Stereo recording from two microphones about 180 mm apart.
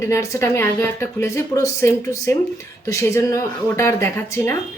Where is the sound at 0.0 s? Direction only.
15° left (ahead or behind).